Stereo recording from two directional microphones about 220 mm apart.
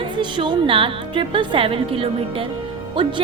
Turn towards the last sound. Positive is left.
turn(degrees=-20)  # may be behind; listen again after turning